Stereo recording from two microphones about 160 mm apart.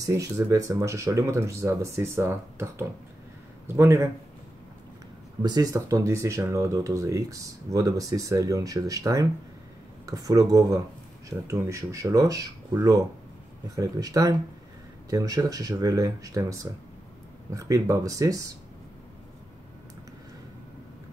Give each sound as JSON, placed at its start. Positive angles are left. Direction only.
{"t": 0.0, "sound": "a man's voice", "side_deg": -20}
{"t": 5.4, "sound": "speech", "side_deg": -25}